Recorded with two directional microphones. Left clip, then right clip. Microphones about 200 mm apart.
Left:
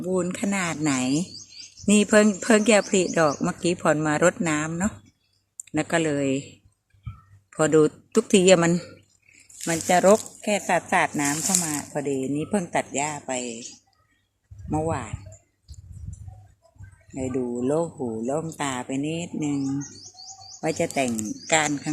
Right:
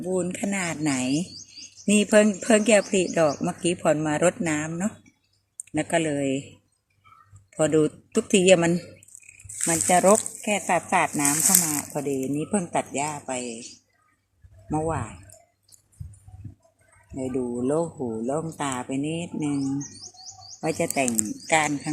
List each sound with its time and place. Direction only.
0.0 s speech: 15° left (ahead or behind)
7.5 s speech: 15° left (ahead or behind)
10.4 s speech: 5° left (ahead or behind)
14.7 s speech: centre (ahead or behind)
17.2 s speech: centre (ahead or behind)